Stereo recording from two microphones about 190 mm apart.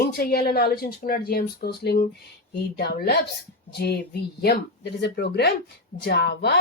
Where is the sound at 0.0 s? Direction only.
55° left (ahead or behind).